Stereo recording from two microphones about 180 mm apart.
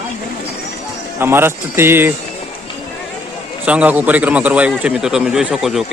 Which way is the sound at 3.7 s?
10° right (ahead or behind).